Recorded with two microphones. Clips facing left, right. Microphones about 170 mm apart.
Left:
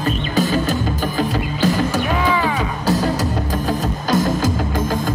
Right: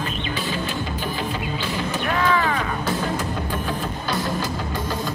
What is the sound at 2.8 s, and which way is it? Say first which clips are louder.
Music: left 10 dB; 40° left (ahead or behind).